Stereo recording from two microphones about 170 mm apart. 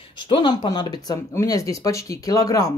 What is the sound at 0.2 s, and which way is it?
Speech, 25° left (ahead or behind).